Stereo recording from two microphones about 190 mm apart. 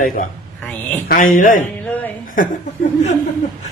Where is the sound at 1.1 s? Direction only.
45° left (ahead or behind).